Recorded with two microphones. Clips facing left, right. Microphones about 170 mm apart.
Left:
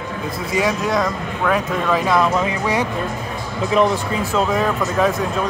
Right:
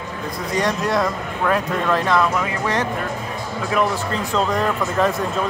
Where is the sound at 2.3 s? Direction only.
20° left (ahead or behind).